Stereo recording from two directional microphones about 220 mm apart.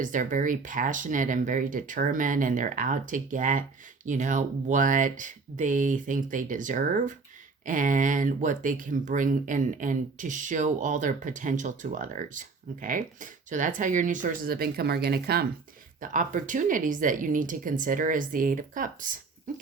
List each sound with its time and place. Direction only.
0.0 s speech: 35° right (ahead or behind)